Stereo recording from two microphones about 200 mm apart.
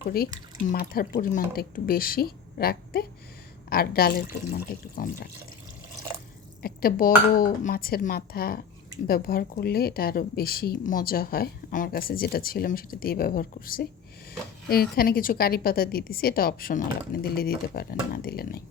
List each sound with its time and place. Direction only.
0.7 s a woman's voice: 50° left (ahead or behind)
6.6 s a woman's voice: 50° left (ahead or behind)